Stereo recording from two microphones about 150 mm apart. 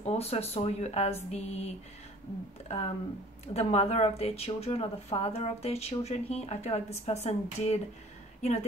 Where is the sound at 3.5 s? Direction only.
45° left (ahead or behind).